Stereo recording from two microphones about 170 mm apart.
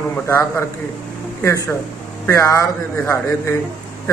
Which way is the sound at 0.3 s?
15° left (ahead or behind).